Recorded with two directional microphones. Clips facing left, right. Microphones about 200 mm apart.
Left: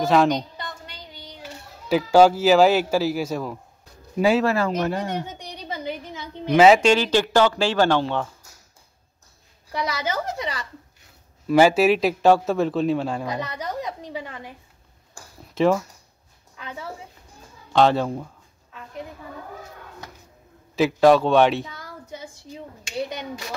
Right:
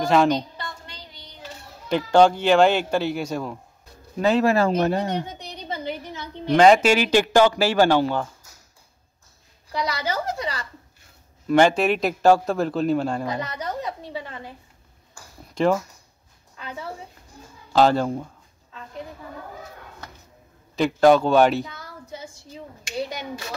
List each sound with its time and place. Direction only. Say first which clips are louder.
0.0 s a man's voice: even; centre (ahead or behind)
1.9 s a man's voice: left 1 dB; 5° left (ahead or behind)
4.6 s speech: right 3 dB; 30° right (ahead or behind)
5.4 s a sound: even; 15° left (ahead or behind)
6.5 s a man's voice: even; 5° left (ahead or behind)
6.8 s speech: even; 10° right (ahead or behind)
10.0 s a woman's voice: even; 20° left (ahead or behind)
11.4 s a man's voice: left 2 dB; 5° left (ahead or behind)
13.8 s a woman's voice: even; 15° left (ahead or behind)
15.5 s speech: left 1 dB; centre (ahead or behind)
17.7 s a man's voice: even; centre (ahead or behind)
20.7 s a man's voice: even; centre (ahead or behind)